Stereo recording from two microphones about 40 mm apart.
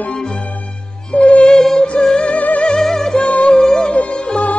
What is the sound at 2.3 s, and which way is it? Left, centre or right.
Music, left.